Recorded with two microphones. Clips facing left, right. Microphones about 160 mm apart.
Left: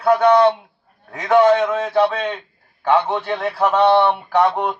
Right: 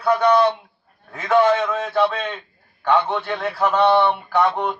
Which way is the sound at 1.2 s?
30° left (ahead or behind).